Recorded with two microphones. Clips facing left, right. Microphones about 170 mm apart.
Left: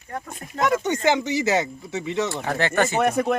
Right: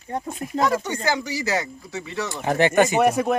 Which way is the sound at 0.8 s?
20° left (ahead or behind).